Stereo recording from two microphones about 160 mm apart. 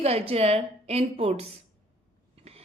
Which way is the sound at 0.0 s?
40° right (ahead or behind).